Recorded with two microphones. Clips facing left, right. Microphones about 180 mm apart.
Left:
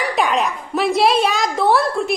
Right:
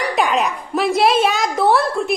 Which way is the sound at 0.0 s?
Centre (ahead or behind).